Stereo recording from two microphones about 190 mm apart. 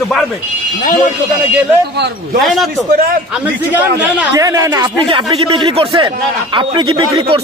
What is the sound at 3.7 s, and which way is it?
Speech, 15° right (ahead or behind).